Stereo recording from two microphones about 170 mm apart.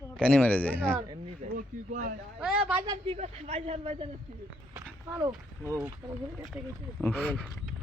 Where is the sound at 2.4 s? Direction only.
5° right (ahead or behind).